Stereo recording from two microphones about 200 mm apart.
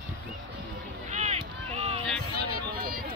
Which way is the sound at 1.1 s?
35° right (ahead or behind).